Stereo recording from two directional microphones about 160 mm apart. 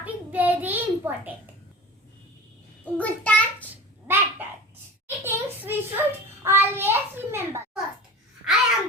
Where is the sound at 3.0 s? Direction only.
10° left (ahead or behind).